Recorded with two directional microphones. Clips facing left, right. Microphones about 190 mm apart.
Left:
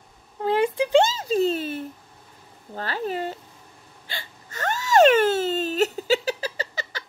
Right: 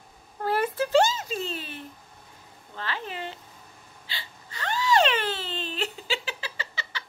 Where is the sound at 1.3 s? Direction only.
40° left (ahead or behind).